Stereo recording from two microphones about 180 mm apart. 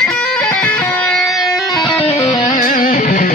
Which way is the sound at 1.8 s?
35° left (ahead or behind).